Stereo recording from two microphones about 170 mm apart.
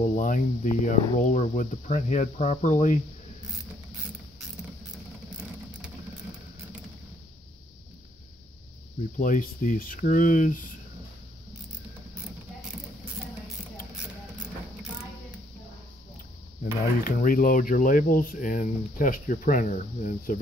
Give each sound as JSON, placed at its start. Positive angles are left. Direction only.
{"t": 0.0, "sound": "speech", "side_deg": 50}
{"t": 4.9, "sound": "vehicle", "side_deg": -5}
{"t": 9.2, "sound": "speech", "side_deg": 55}
{"t": 17.0, "sound": "speech", "side_deg": 55}